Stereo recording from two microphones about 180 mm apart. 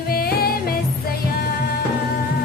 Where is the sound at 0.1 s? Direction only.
55° left (ahead or behind).